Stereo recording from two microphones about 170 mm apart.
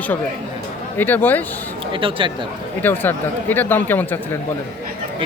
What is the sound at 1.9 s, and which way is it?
Speech, 30° right (ahead or behind).